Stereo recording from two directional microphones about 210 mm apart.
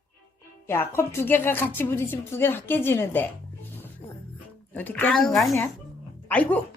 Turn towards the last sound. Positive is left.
turn(degrees=5)  # may be behind; listen again after turning